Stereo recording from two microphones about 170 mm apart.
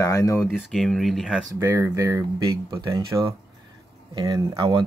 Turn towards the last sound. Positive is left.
turn(degrees=-20)  # may be behind; listen again after turning